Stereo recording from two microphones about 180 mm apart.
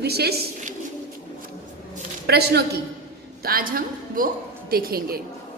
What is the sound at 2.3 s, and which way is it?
A woman's voice, 65° right (ahead or behind).